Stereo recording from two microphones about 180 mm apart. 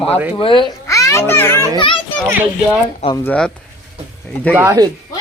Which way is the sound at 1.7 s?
25° left (ahead or behind).